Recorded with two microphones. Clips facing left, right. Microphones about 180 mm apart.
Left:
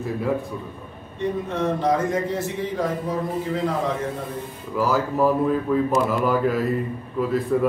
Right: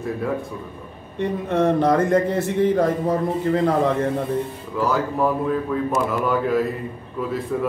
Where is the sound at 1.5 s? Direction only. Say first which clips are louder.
Right 6 dB; 55° right (ahead or behind).